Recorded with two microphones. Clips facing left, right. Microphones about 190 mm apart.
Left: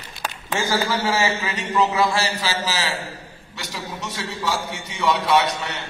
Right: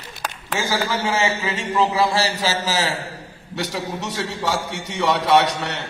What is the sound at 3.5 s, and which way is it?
A man's voice, 65° right (ahead or behind).